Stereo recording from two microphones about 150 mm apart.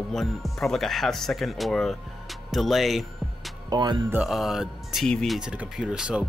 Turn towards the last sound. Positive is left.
turn(degrees=-5)  # may be behind; listen again after turning